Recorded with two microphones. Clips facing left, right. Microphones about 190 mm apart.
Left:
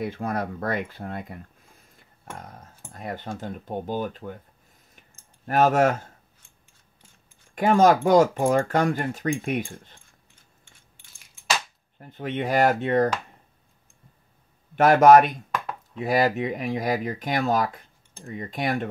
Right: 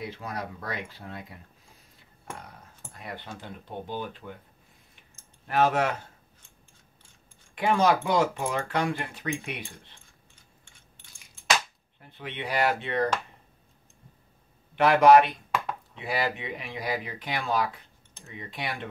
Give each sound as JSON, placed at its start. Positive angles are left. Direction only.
{"t": 0.0, "sound": "speech", "side_deg": 50}
{"t": 2.9, "sound": "speech", "side_deg": 45}
{"t": 5.5, "sound": "speech", "side_deg": 45}
{"t": 7.5, "sound": "speech", "side_deg": 45}
{"t": 11.0, "sound": "a sound", "side_deg": 10}
{"t": 12.0, "sound": "speech", "side_deg": 45}
{"t": 14.8, "sound": "speech", "side_deg": 45}
{"t": 15.5, "sound": "chop", "side_deg": 0}
{"t": 16.0, "sound": "speech", "side_deg": 45}